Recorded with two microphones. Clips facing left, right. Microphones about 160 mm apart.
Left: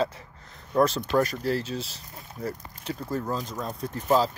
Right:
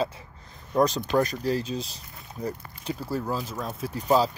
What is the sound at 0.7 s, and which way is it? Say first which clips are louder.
Speech: even; 15° right (ahead or behind).